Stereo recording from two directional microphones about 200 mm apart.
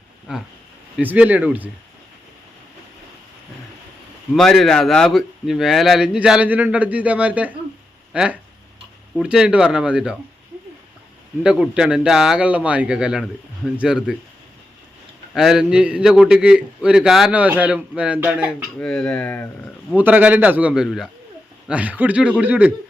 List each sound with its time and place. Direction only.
0.3 s a man's voice: 5° right (ahead or behind)
4.4 s a man's voice: centre (ahead or behind)
11.4 s a man's voice: 5° right (ahead or behind)
15.4 s a man's voice: 5° right (ahead or behind)
19.9 s a man's voice: 10° right (ahead or behind)